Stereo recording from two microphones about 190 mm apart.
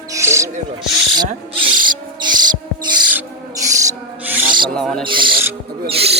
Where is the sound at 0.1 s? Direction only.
15° right (ahead or behind).